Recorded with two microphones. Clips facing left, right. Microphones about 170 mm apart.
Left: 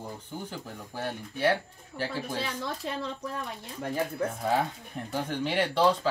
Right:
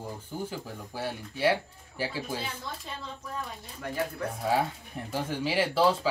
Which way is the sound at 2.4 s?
70° left (ahead or behind).